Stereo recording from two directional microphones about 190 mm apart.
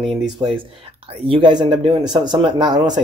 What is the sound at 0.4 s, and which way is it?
Speech, 25° right (ahead or behind).